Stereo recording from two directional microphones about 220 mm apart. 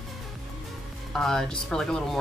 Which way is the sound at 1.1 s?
Centre (ahead or behind).